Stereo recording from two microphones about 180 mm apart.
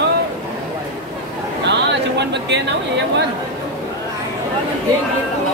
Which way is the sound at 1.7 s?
70° right (ahead or behind).